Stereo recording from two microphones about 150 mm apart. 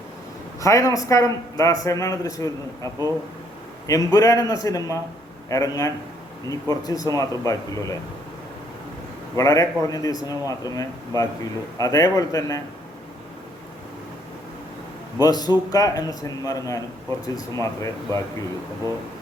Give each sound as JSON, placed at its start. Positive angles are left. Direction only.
{"t": 0.6, "sound": "a man's voice", "side_deg": 20}
{"t": 9.3, "sound": "a man's voice", "side_deg": 20}
{"t": 15.2, "sound": "a man's voice", "side_deg": 25}